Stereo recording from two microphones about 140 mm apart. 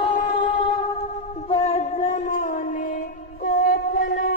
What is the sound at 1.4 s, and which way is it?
Music, 50° left (ahead or behind).